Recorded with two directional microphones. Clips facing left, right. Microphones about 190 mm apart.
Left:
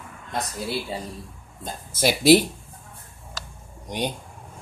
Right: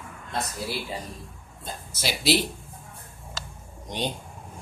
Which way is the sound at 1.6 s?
50° left (ahead or behind).